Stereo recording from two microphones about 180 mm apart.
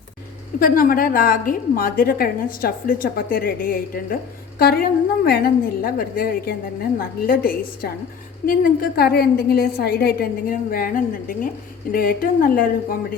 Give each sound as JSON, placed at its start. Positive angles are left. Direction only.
{"t": 0.6, "sound": "a woman's voice", "side_deg": 50}